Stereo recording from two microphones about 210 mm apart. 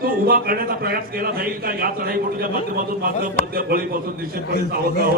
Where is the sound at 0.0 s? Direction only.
45° right (ahead or behind).